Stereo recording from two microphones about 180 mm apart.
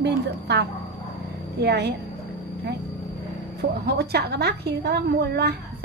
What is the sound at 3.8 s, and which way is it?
A woman's voice, 60° right (ahead or behind).